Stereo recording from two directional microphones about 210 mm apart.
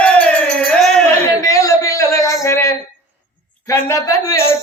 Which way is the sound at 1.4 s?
15° left (ahead or behind).